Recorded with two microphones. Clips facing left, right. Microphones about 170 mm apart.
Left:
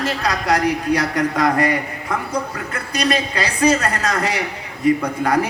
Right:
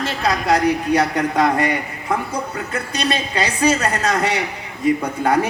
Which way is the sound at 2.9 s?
25° right (ahead or behind).